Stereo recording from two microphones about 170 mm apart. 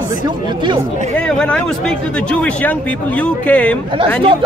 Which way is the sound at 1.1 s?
5° left (ahead or behind).